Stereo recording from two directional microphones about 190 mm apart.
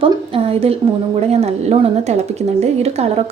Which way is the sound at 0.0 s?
30° right (ahead or behind).